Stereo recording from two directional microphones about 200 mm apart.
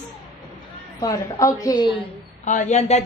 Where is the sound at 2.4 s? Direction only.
40° left (ahead or behind).